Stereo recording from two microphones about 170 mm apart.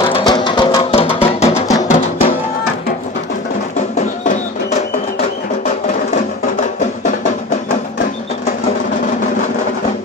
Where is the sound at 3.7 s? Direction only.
45° left (ahead or behind).